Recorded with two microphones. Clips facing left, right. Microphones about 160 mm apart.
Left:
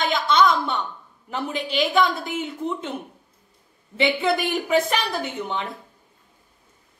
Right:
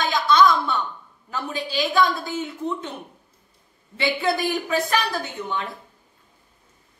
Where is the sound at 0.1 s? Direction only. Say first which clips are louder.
Right 2 dB; 25° left (ahead or behind).